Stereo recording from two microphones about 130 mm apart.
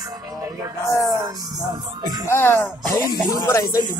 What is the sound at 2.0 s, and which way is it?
Speech, 30° right (ahead or behind).